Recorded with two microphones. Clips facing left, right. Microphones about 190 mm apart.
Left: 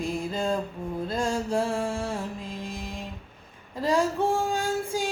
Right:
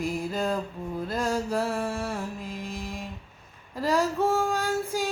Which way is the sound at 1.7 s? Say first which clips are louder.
Left 1 dB; 30° left (ahead or behind).